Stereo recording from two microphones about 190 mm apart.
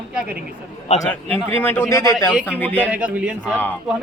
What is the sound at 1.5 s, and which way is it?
Speech, 10° left (ahead or behind).